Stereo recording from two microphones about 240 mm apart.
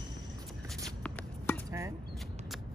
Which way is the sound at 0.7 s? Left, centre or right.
Centre.